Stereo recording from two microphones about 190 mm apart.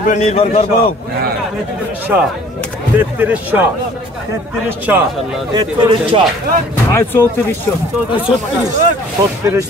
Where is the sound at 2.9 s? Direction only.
10° right (ahead or behind).